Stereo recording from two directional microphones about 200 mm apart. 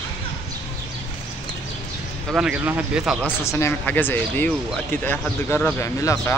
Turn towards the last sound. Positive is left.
turn(degrees=15)  # may be behind; listen again after turning